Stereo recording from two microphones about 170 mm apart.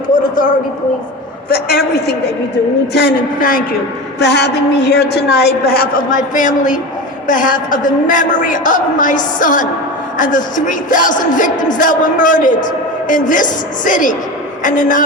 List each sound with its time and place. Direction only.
1.5 s a man's voice: 65° left (ahead or behind)
2.9 s a woman's voice: 60° left (ahead or behind)
4.2 s a woman's voice: 85° left; by 15.0 s 50° left (ahead or behind)